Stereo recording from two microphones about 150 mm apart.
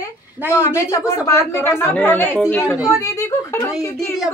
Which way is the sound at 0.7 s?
20° left (ahead or behind).